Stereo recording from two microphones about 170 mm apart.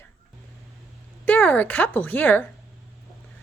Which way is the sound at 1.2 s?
10° left (ahead or behind).